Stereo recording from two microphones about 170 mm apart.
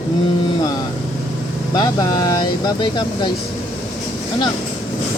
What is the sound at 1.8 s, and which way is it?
Speech, 25° left (ahead or behind).